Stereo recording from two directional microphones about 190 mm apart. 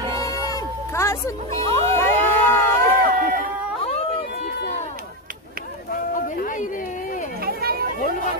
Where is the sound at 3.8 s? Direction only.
30° left (ahead or behind).